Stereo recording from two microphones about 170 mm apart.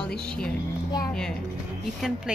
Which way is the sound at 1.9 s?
Centre (ahead or behind).